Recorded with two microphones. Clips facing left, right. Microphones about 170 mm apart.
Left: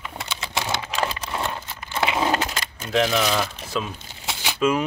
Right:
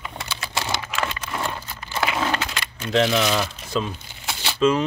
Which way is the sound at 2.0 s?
20° left (ahead or behind).